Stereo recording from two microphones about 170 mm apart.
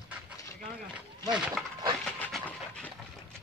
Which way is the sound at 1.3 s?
5° right (ahead or behind).